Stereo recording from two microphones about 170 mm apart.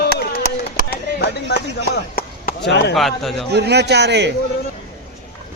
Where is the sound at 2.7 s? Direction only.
90° left.